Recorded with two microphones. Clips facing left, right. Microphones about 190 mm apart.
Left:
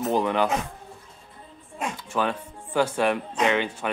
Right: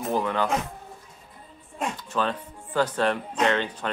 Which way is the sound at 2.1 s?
10° left (ahead or behind).